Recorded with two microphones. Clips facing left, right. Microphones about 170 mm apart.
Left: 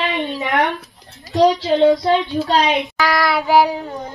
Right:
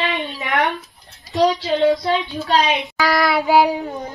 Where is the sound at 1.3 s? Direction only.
20° left (ahead or behind).